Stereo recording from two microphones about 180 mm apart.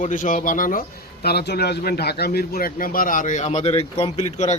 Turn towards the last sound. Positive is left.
turn(degrees=40)  # may be behind; listen again after turning